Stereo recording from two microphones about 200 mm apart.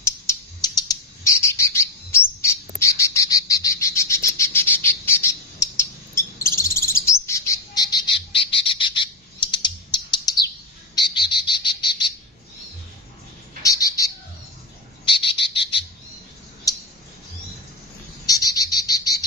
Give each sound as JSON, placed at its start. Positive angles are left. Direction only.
{"t": 0.0, "sound": "bird", "side_deg": 15}
{"t": 11.4, "sound": "frog", "side_deg": 25}
{"t": 13.6, "sound": "bird", "side_deg": 15}
{"t": 15.0, "sound": "frog", "side_deg": 25}
{"t": 16.7, "sound": "a sound", "side_deg": 20}
{"t": 18.2, "sound": "cricket", "side_deg": 20}